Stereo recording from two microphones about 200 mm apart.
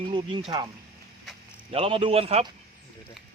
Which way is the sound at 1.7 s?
30° right (ahead or behind).